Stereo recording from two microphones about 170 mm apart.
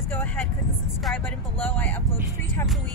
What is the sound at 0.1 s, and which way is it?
Vehicle, 10° left (ahead or behind).